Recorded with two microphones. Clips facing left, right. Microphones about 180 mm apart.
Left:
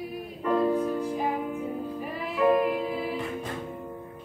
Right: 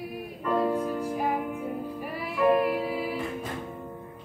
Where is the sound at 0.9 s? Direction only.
10° right (ahead or behind).